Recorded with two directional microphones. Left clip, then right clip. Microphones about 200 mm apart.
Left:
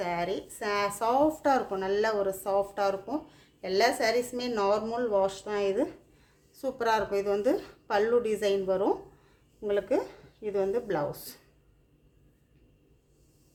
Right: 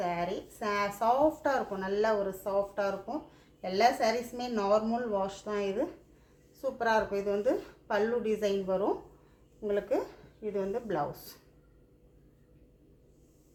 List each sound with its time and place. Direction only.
0.0 s speech: 45° left (ahead or behind)